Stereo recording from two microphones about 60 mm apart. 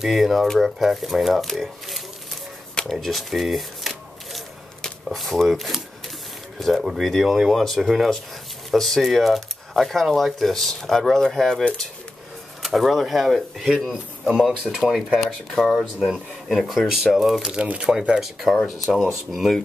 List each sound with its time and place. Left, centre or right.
0.0 s speech: centre
2.7 s a sound: centre
5.0 s speech: centre
12.6 s speech: centre
17.5 s speech: centre
18.2 s speech: centre